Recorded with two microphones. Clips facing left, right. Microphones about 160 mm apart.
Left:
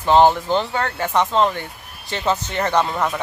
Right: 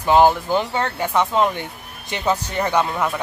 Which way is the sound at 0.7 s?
20° right (ahead or behind).